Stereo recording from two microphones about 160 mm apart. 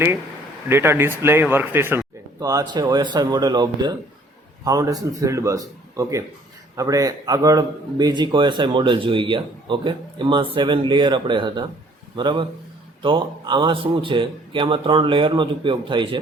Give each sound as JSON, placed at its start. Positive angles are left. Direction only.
{"t": 0.7, "sound": "speech", "side_deg": -15}
{"t": 2.4, "sound": "a man's voice", "side_deg": -25}